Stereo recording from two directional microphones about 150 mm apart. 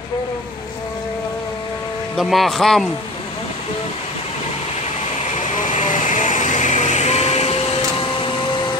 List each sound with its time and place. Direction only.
2.1 s speech: centre (ahead or behind)
5.4 s vehicle: 55° left (ahead or behind)